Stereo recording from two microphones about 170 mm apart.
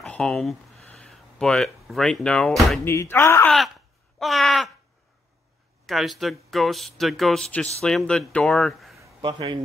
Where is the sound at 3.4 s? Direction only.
Centre (ahead or behind).